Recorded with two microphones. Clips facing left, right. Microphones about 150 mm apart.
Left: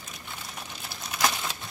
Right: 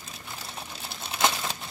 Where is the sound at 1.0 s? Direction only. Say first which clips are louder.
Right 1 dB; 25° right (ahead or behind).